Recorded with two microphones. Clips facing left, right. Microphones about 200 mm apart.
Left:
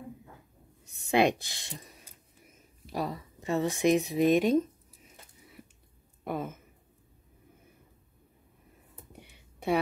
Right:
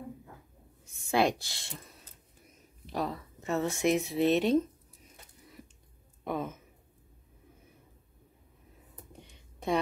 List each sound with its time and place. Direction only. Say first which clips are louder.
1.1 s speech: left 2 dB; 20° left (ahead or behind)
6.2 s speech: even; 5° left (ahead or behind)
9.2 s a sound: left 2 dB; 10° left (ahead or behind)